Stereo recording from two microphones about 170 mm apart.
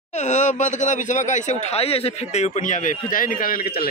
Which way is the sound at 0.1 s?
45° left (ahead or behind).